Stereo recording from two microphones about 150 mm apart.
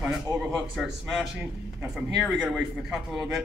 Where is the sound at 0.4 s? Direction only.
Centre (ahead or behind).